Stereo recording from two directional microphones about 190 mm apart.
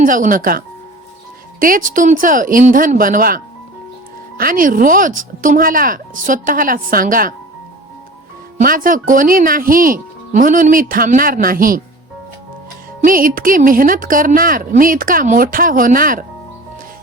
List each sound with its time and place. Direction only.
0.0 s speech: 45° right (ahead or behind)
8.5 s speech: 45° right (ahead or behind)
13.0 s speech: 45° right (ahead or behind)